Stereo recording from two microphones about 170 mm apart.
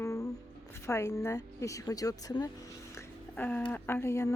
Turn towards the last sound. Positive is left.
turn(degrees=15)  # may be behind; listen again after turning